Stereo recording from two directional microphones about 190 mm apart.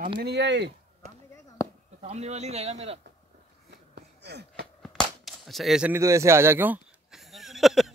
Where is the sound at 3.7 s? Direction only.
60° right (ahead or behind).